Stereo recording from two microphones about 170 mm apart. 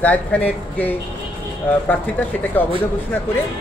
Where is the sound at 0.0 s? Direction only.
10° left (ahead or behind).